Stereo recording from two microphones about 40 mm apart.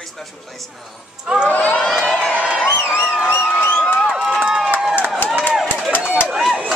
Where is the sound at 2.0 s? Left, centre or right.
Centre.